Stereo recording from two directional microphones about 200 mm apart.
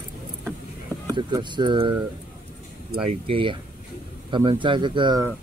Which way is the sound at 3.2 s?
25° right (ahead or behind).